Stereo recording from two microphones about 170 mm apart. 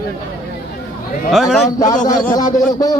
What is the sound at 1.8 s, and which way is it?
Speech, 50° left (ahead or behind).